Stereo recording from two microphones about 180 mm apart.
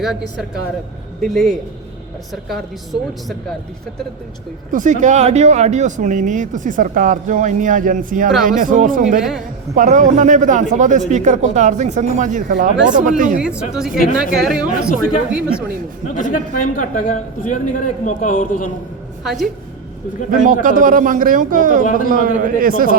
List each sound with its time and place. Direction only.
1.2 s a woman's voice: 5° left (ahead or behind)
4.7 s speech: 45° right (ahead or behind)
13.6 s a woman's voice: 5° right (ahead or behind)
16.1 s a man's voice: 50° left (ahead or behind)
19.2 s a woman's voice: centre (ahead or behind)
20.3 s speech: 45° right (ahead or behind)